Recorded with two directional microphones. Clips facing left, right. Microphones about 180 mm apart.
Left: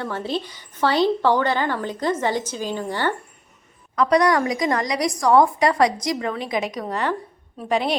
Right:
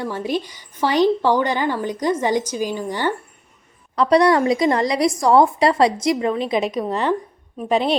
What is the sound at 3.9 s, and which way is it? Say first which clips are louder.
A woman's voice: right 3 dB; 30° right (ahead or behind).